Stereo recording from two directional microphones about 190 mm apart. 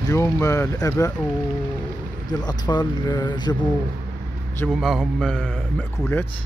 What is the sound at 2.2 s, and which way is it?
Speech, 20° left (ahead or behind).